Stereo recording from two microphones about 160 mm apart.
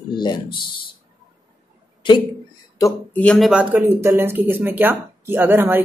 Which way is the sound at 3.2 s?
5° left (ahead or behind).